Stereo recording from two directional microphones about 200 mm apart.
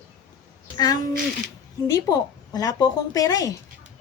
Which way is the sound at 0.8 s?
20° left (ahead or behind).